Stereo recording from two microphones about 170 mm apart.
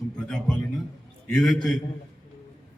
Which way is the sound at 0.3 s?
5° left (ahead or behind).